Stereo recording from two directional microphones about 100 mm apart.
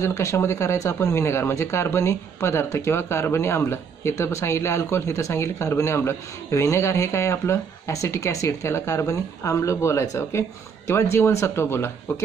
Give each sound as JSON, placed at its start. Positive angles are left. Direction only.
{"t": 0.0, "sound": "speech", "side_deg": 30}